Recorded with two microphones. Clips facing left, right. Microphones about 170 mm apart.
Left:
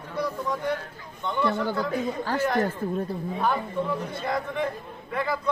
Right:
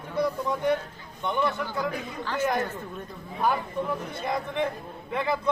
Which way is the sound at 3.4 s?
15° right (ahead or behind).